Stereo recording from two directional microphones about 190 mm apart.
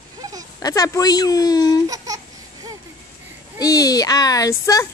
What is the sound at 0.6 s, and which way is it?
Speech, 20° left (ahead or behind).